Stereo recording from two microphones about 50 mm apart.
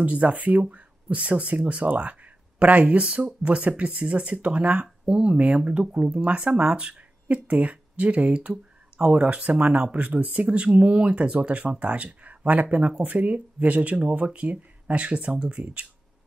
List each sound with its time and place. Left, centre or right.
0.0 s speech: right